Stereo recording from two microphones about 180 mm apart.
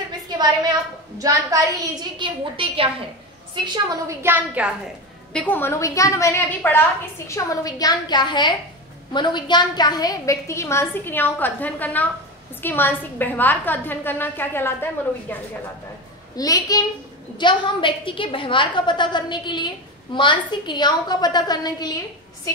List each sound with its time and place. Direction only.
0.4 s a woman's voice: 20° right (ahead or behind)
3.6 s a woman's voice: 20° right (ahead or behind)
5.3 s a woman's voice: 10° left (ahead or behind)
16.3 s a woman's voice: 20° left (ahead or behind)